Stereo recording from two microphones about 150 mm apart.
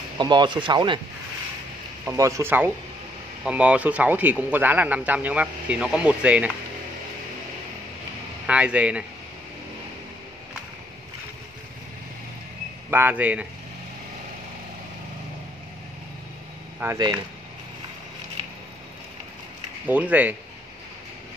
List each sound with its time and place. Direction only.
0.2 s speech: 30° right (ahead or behind)
2.0 s speech: 20° right (ahead or behind)
8.5 s speech: 10° right (ahead or behind)
12.9 s speech: 10° right (ahead or behind)
16.8 s speech: 25° right (ahead or behind)
19.9 s speech: 10° right (ahead or behind)